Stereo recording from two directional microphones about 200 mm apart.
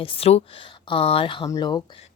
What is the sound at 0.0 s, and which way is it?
Speech, 30° left (ahead or behind).